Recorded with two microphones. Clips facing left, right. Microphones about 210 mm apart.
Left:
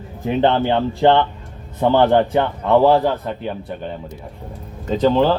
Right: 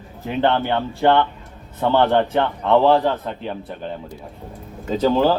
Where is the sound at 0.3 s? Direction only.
20° left (ahead or behind).